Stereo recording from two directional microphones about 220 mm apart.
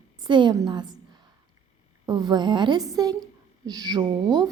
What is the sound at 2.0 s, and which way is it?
Speech, 20° right (ahead or behind).